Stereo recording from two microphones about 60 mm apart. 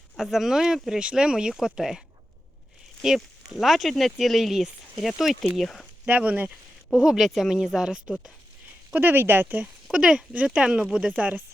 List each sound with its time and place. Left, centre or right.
0.2 s speech: centre
3.2 s speech: centre
6.1 s speech: right
6.9 s speech: centre
9.0 s speech: right
9.9 s speech: centre